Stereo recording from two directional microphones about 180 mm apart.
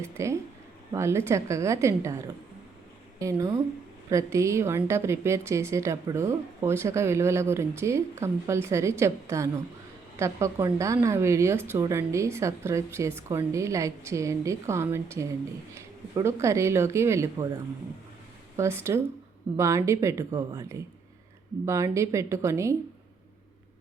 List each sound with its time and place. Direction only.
0.0 s a woman's voice: 15° right (ahead or behind)